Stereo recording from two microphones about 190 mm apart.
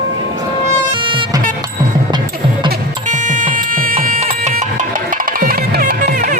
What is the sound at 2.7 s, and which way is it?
Music, 40° right (ahead or behind).